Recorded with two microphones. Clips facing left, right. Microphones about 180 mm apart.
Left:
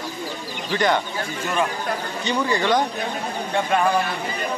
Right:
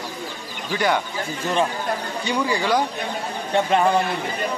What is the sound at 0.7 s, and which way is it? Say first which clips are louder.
Speech: left 1 dB; 10° right (ahead or behind).